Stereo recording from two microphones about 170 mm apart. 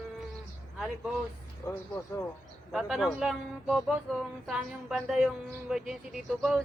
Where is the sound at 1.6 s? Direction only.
20° left (ahead or behind).